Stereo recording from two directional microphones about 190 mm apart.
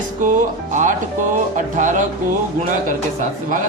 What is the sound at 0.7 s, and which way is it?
Speech, 40° right (ahead or behind).